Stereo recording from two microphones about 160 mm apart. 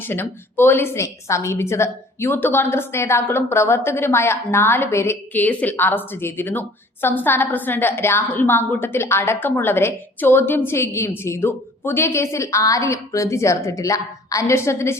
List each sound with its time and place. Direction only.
0.1 s a woman's voice: 15° left (ahead or behind)